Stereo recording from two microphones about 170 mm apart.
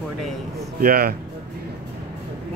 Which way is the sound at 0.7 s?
60° right (ahead or behind).